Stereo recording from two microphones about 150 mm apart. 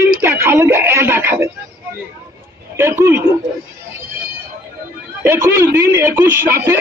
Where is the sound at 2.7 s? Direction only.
15° right (ahead or behind).